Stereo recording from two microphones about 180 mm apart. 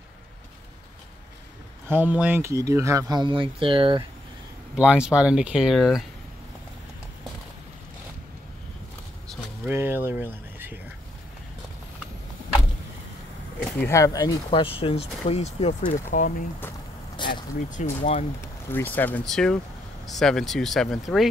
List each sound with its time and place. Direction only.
1.9 s speech: 10° right (ahead or behind); by 4.0 s 30° right (ahead or behind)
4.7 s speech: 5° right (ahead or behind)
9.7 s speech: 10° right (ahead or behind)
13.8 s speech: 15° left (ahead or behind); by 15.7 s 35° left (ahead or behind)
15.8 s speech: 50° left (ahead or behind)
17.2 s vehicle: 25° left (ahead or behind)
17.6 s speech: 45° left (ahead or behind)
18.4 s speech: 10° left (ahead or behind)